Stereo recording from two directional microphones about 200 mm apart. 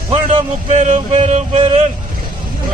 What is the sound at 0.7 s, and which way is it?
Music, 35° right (ahead or behind).